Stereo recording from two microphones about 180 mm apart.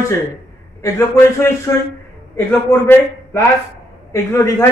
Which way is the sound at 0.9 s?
15° left (ahead or behind).